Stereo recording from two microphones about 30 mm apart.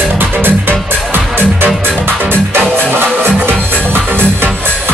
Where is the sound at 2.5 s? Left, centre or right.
Right.